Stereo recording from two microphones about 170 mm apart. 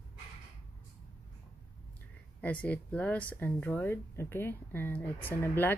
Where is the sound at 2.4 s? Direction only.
10° left (ahead or behind).